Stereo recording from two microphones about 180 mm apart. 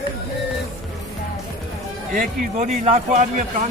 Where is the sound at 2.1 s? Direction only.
40° right (ahead or behind).